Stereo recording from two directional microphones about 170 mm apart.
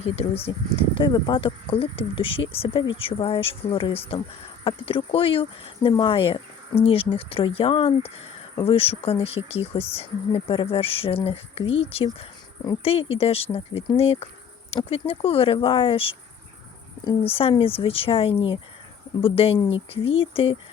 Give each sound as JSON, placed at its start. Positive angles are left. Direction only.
{"t": 0.0, "sound": "speech", "side_deg": 35}